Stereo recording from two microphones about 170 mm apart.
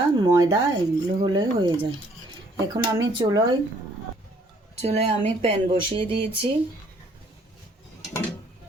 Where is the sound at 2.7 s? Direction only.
15° right (ahead or behind).